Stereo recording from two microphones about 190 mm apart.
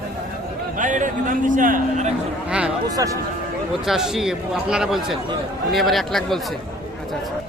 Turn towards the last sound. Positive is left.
turn(degrees=0)  # may be behind; listen again after turning